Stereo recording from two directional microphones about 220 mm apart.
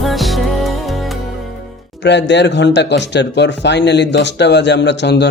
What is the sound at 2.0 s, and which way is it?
Speech, 50° left (ahead or behind).